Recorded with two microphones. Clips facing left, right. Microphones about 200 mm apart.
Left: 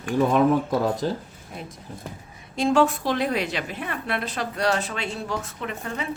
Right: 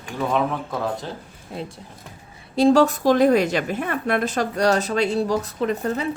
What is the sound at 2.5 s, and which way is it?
A woman's voice, 35° right (ahead or behind).